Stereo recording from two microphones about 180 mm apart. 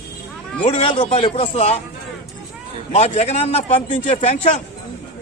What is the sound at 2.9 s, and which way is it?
A man's voice, 35° left (ahead or behind).